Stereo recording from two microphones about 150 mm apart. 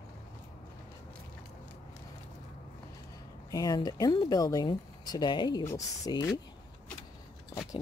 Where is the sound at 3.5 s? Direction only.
25° left (ahead or behind).